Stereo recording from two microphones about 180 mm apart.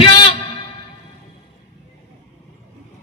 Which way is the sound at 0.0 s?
30° left (ahead or behind).